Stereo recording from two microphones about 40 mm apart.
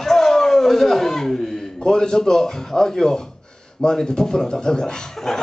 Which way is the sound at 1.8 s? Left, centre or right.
Centre.